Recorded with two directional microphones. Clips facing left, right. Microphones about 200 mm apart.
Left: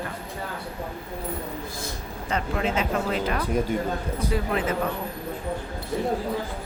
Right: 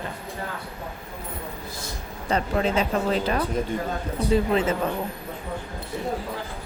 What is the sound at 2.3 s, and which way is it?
A woman's voice, 35° right (ahead or behind).